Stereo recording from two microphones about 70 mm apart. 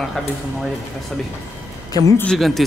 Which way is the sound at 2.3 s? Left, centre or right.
Centre.